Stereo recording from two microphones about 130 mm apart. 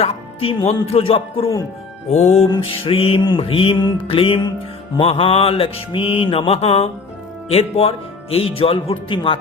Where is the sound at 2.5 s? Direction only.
40° left (ahead or behind).